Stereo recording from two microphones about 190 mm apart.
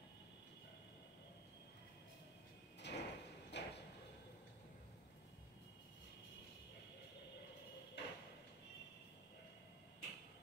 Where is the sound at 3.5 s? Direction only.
65° left (ahead or behind).